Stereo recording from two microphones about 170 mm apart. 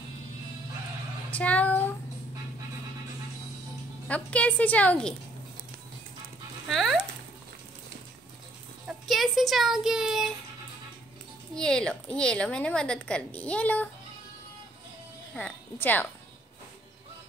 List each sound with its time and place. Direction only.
1.3 s a sound: 10° left (ahead or behind)
4.1 s a woman's voice: 10° left (ahead or behind)
6.7 s speech: centre (ahead or behind)
8.8 s speech: centre (ahead or behind)
11.5 s speech: 5° left (ahead or behind)
15.3 s a woman's voice: 10° left (ahead or behind)